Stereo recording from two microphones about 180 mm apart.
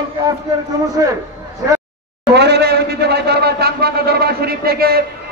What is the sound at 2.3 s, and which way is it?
A man's voice, 70° right (ahead or behind).